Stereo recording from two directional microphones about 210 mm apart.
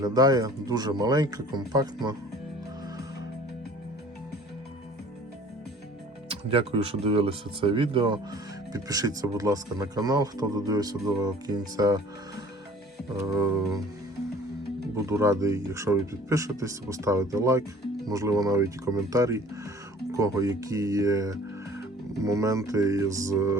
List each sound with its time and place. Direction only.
0.0 s speech: 20° right (ahead or behind)
6.2 s speech: 25° right (ahead or behind)
13.2 s speech: 15° right (ahead or behind)
14.9 s speech: 15° right (ahead or behind)